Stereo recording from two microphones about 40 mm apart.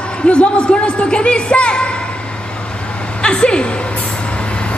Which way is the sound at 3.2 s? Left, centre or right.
Left.